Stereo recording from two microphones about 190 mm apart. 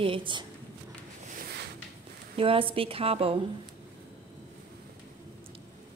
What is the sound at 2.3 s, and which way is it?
A woman's voice, 30° right (ahead or behind).